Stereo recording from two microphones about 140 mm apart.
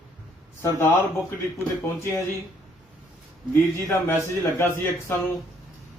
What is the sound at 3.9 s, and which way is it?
A man's voice, 15° left (ahead or behind).